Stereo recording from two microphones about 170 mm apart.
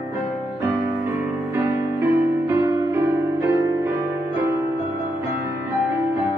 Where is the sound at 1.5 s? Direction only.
15° right (ahead or behind).